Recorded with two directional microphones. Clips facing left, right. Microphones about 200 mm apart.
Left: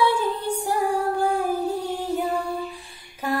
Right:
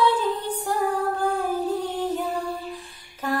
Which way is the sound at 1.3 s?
10° left (ahead or behind).